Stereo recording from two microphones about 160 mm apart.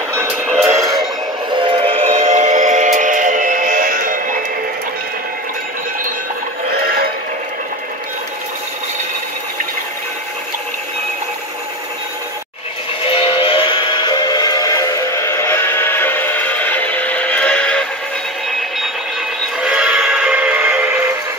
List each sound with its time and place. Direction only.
0.1 s music: 15° right (ahead or behind)
0.7 s a sound: 20° right (ahead or behind)
1.5 s train: 30° right (ahead or behind); by 4.4 s 55° right (ahead or behind)
13.0 s music: 35° left (ahead or behind); by 17.8 s 5° left (ahead or behind)
19.6 s music: 5° right (ahead or behind)